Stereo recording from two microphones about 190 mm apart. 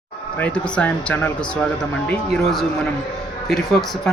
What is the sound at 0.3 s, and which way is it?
Speech, 5° left (ahead or behind).